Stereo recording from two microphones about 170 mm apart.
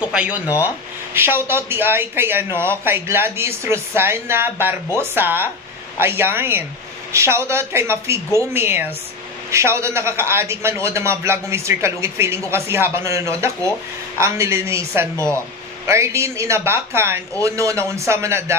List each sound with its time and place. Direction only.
0.0 s a man's voice: 5° right (ahead or behind)